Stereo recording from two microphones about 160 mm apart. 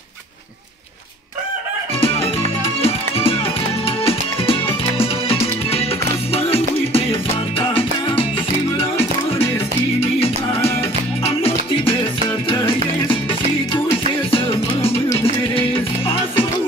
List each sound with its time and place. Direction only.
2.0 s music: 35° left (ahead or behind)
14.3 s music: 35° left (ahead or behind)